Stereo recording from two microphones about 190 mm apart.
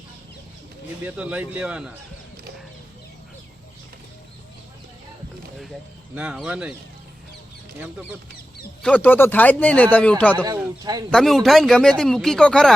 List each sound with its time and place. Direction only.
1.0 s a man's voice: 5° right (ahead or behind)
6.1 s speech: 5° right (ahead or behind)
7.8 s a man's voice: 10° right (ahead or behind)
8.8 s speech: 10° left (ahead or behind)
10.3 s speech: 20° right (ahead or behind)
11.1 s speech: centre (ahead or behind)